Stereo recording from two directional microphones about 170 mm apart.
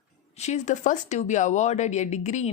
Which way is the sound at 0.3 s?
40° left (ahead or behind).